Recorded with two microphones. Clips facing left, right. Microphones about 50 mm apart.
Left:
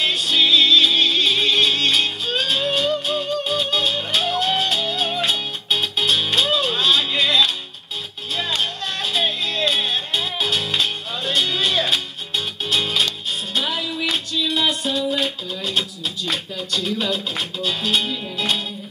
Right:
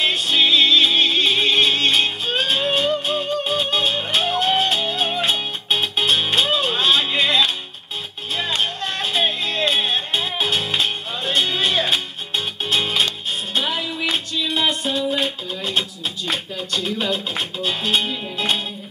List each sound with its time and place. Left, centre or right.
0.0 s music: centre